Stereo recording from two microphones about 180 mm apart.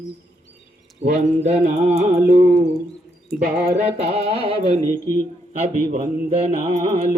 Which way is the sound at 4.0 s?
35° right (ahead or behind).